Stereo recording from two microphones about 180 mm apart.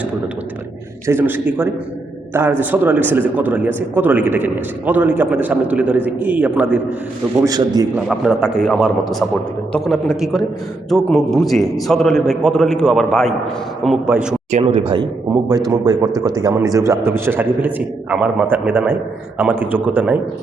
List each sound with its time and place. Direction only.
1.0 s speech: 10° right (ahead or behind)
7.4 s a man's voice: 20° right (ahead or behind)
7.9 s a man's voice: centre (ahead or behind)
14.5 s a man's voice: 35° right (ahead or behind)
15.3 s speech: 20° right (ahead or behind)